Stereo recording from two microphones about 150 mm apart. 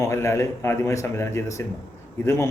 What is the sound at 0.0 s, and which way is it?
A man's voice, 20° left (ahead or behind).